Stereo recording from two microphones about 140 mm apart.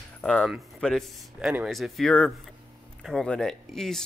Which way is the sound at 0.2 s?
5° left (ahead or behind).